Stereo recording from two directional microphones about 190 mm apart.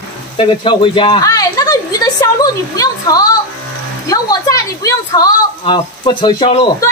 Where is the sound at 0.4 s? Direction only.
25° left (ahead or behind).